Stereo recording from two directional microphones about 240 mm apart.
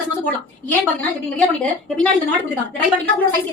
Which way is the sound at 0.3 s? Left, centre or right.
Centre.